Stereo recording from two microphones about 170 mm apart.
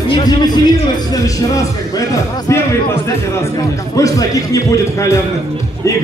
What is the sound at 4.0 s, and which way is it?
A man's voice, 20° left (ahead or behind).